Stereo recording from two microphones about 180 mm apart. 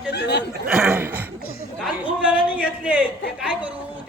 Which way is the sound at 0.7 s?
5° right (ahead or behind).